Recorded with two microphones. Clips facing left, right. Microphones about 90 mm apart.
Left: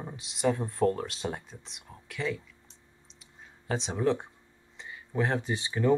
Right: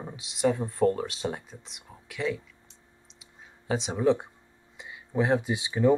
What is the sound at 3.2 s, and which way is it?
Clicking, 5° right (ahead or behind).